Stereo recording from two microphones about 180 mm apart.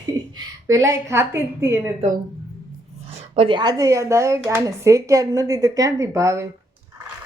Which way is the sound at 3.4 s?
25° right (ahead or behind).